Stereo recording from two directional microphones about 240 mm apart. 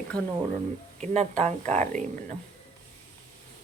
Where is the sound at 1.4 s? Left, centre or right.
Right.